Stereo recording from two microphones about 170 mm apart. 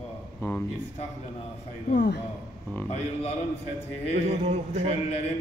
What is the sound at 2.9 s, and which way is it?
Mantra, 40° left (ahead or behind).